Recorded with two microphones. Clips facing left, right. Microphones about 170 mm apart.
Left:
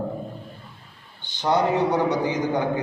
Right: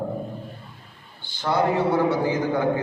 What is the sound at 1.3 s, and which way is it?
A man's voice, 20° left (ahead or behind).